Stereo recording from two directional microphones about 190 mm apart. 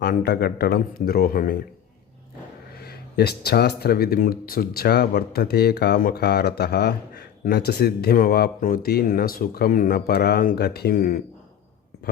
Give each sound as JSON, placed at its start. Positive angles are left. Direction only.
{"t": 0.0, "sound": "speech", "side_deg": 55}
{"t": 2.7, "sound": "speech", "side_deg": 55}